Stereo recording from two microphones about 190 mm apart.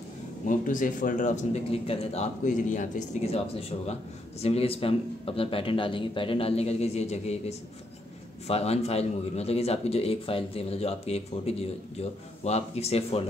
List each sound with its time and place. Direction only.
0.5 s speech: 45° left (ahead or behind)